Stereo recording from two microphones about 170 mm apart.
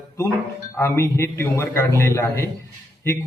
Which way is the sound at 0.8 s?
15° left (ahead or behind).